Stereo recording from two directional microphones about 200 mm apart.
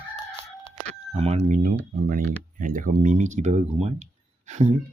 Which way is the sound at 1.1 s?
30° right (ahead or behind).